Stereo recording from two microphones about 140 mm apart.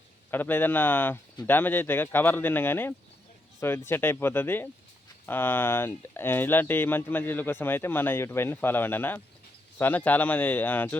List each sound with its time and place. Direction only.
0.3 s speech: 15° left (ahead or behind)